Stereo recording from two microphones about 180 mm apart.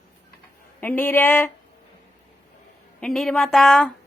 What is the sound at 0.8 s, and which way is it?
Speech, 10° left (ahead or behind).